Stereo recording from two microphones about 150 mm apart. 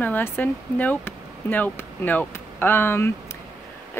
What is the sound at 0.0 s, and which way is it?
Speech, 10° left (ahead or behind).